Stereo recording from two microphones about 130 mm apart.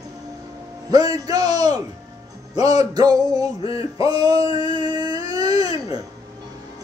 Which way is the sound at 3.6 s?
45° left (ahead or behind).